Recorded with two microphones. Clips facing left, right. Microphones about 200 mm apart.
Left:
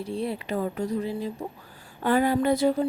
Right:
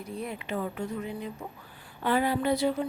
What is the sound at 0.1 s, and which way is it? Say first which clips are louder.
A woman's voice: left 4 dB; 30° left (ahead or behind).